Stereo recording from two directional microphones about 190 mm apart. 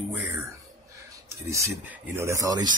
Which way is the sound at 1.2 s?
15° right (ahead or behind).